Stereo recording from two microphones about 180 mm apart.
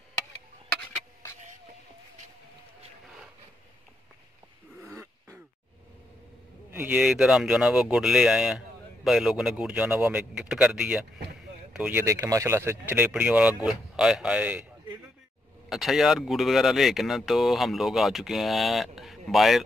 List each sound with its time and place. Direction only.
4.8 s throat clearing: 15° right (ahead or behind)
6.7 s speech: 10° right (ahead or behind)
15.7 s speech: centre (ahead or behind)